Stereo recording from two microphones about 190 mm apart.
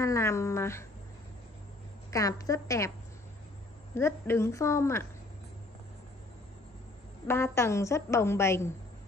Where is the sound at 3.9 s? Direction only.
15° left (ahead or behind).